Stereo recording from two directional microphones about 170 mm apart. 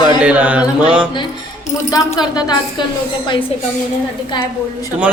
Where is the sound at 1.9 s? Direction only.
20° left (ahead or behind).